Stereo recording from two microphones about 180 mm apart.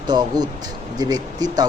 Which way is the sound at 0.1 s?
25° right (ahead or behind).